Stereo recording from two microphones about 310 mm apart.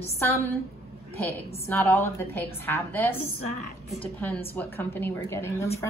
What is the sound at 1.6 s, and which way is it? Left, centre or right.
A woman's voice, centre.